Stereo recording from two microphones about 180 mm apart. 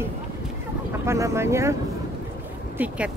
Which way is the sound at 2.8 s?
10° right (ahead or behind).